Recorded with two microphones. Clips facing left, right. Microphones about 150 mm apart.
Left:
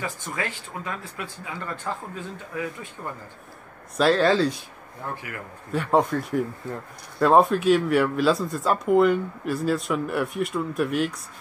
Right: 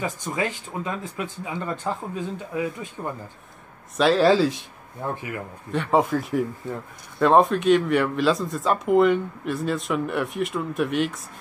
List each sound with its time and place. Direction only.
0.0 s speech: 20° right (ahead or behind)
3.9 s speech: centre (ahead or behind)
5.1 s speech: 25° right (ahead or behind)
5.7 s speech: centre (ahead or behind)